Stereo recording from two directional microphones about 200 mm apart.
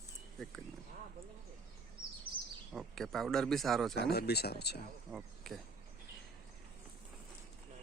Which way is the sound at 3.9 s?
55° left (ahead or behind).